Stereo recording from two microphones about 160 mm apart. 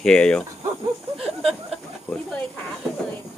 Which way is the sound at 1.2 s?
Centre (ahead or behind).